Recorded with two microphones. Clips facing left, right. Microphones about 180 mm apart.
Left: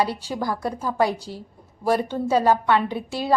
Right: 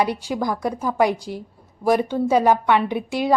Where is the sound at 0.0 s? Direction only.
15° right (ahead or behind).